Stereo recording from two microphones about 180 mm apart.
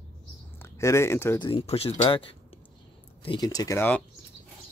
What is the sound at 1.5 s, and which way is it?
Speech, 35° left (ahead or behind).